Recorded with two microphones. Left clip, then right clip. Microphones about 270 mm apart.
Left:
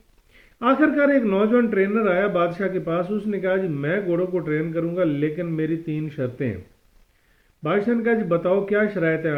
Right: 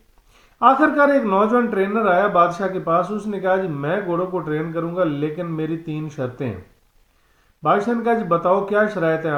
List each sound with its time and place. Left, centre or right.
0.6 s speech: right
7.6 s speech: right